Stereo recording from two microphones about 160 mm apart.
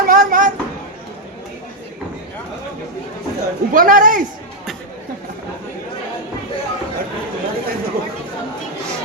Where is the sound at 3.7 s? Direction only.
60° right (ahead or behind).